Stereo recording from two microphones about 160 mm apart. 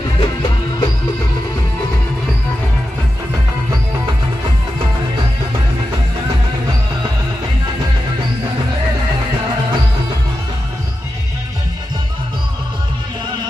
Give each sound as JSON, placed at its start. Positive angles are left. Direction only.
{"t": 0.2, "sound": "music", "side_deg": 30}